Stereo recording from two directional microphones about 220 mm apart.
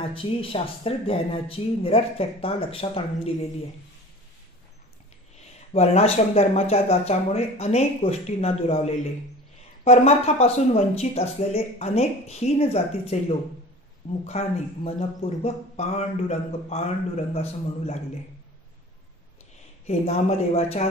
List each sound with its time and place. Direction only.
0.0 s speech: 25° left (ahead or behind)
5.7 s speech: 30° left (ahead or behind)
14.2 s speech: 30° left (ahead or behind)
19.9 s speech: 30° left (ahead or behind)